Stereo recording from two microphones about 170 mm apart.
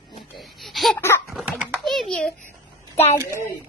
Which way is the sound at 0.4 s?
Centre (ahead or behind).